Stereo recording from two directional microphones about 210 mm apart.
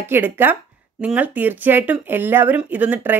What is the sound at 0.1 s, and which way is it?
Speech, 10° right (ahead or behind).